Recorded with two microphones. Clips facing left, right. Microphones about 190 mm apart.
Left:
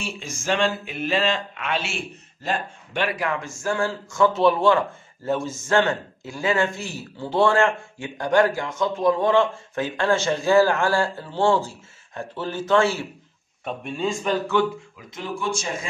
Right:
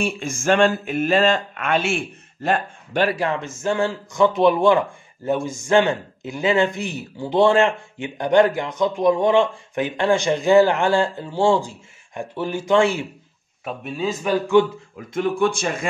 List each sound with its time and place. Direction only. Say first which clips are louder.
0.0 s speech: right 8 dB; 55° right (ahead or behind)
3.0 s speech: right 5 dB; 30° right (ahead or behind); by 13.0 s 15° right (ahead or behind)
13.7 s speech: right 1 dB; 5° right (ahead or behind)
15.0 s speech: right 16 dB; 55° right (ahead or behind)